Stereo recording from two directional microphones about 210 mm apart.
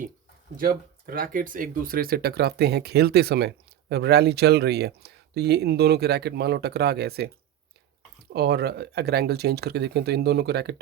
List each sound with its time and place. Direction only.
0.5 s speech: 45° right (ahead or behind)
8.3 s speech: 50° right (ahead or behind)